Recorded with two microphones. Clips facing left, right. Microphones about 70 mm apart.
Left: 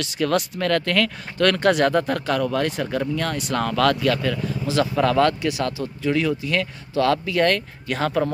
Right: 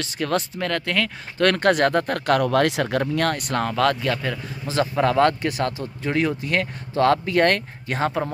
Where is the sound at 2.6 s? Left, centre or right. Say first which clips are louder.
Right 3 dB; right.